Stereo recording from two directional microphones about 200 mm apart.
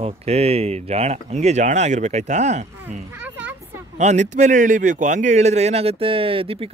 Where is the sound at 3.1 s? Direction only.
10° right (ahead or behind).